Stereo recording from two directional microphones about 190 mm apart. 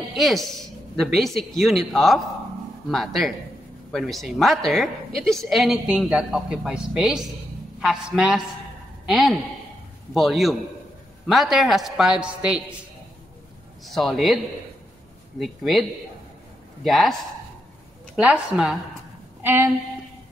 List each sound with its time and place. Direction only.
0.1 s a woman's voice: centre (ahead or behind)
13.8 s a woman's voice: centre (ahead or behind)
16.8 s a woman's voice: centre (ahead or behind)
18.1 s a woman's voice: 5° right (ahead or behind)